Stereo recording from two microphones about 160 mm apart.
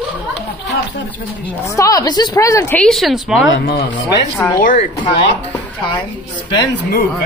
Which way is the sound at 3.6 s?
85° left.